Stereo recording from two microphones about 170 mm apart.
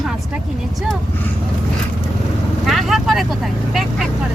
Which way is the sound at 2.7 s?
Centre (ahead or behind).